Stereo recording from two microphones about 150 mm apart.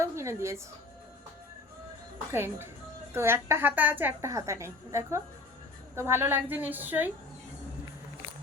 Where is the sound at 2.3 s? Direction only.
15° right (ahead or behind).